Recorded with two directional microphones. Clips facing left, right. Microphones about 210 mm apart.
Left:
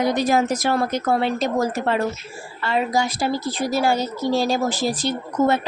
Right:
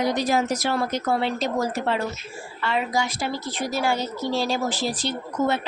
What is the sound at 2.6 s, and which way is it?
Speech, 40° left (ahead or behind).